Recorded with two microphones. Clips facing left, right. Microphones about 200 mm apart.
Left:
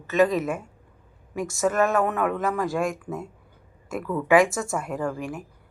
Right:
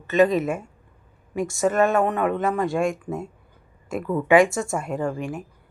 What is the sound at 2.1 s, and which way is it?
Speech, 25° right (ahead or behind).